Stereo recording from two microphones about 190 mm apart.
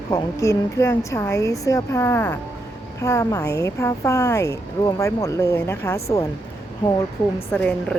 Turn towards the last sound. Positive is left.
turn(degrees=5)  # may be behind; listen again after turning